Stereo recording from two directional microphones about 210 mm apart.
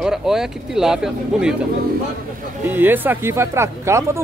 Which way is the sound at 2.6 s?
10° right (ahead or behind).